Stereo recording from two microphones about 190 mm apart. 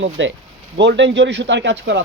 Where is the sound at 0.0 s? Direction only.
75° right (ahead or behind).